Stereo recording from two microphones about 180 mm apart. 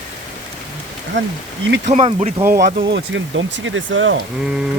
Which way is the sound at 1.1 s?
90° right.